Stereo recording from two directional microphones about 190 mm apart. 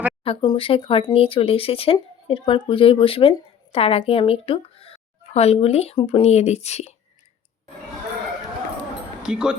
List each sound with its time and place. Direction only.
0.3 s speech: 30° left (ahead or behind)
9.2 s speech: 5° right (ahead or behind)